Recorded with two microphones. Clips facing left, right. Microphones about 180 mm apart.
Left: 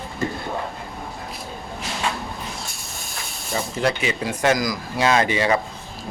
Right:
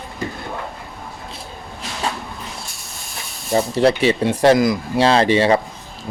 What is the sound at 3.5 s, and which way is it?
Speech, 35° right (ahead or behind).